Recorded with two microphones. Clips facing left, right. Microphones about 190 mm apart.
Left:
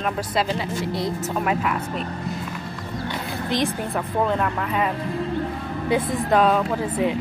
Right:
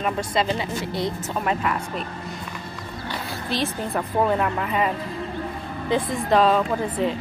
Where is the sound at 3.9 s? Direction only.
5° right (ahead or behind).